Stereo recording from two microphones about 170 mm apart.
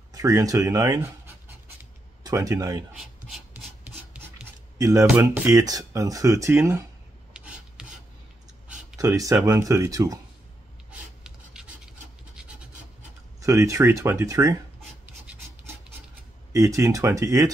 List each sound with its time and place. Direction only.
0.1 s speech: 20° right (ahead or behind)
2.9 s speech: centre (ahead or behind)
4.7 s speech: 20° right (ahead or behind)
7.3 s filing: 5° right (ahead or behind)
8.9 s speech: 20° right (ahead or behind)
10.9 s writing: 5° right (ahead or behind)
13.4 s speech: 20° right (ahead or behind)
16.5 s speech: 20° right (ahead or behind)